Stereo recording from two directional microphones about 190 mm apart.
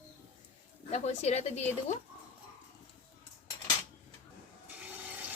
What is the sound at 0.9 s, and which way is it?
Speech, 35° left (ahead or behind).